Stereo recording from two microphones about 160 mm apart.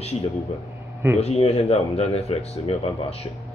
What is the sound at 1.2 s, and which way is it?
Speech, 40° left (ahead or behind).